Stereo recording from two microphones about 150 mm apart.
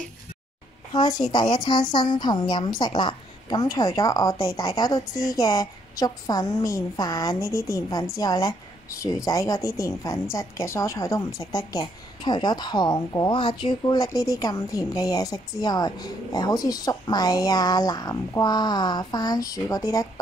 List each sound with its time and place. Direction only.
0.9 s a woman's voice: 25° left (ahead or behind)